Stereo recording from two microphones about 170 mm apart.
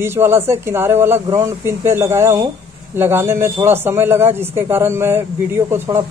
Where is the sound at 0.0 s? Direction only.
15° right (ahead or behind).